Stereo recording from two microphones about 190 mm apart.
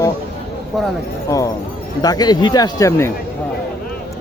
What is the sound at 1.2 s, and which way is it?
A man's voice, 15° left (ahead or behind).